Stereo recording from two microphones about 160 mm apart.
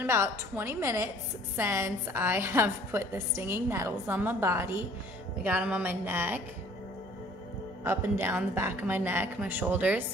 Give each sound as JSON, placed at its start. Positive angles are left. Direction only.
{"t": 0.0, "sound": "a woman's voice", "side_deg": -15}
{"t": 7.8, "sound": "a woman's voice", "side_deg": -15}